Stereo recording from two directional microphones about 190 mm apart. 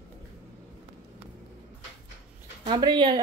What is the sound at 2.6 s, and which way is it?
Speech, 25° right (ahead or behind).